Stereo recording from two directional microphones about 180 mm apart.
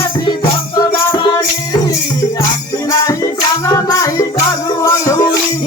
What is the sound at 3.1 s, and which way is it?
Music, 20° left (ahead or behind).